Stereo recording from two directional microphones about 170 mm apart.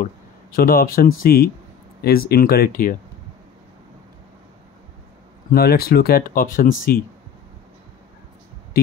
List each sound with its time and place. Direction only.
0.0 s speech: 55° left (ahead or behind)
5.5 s speech: 60° left (ahead or behind)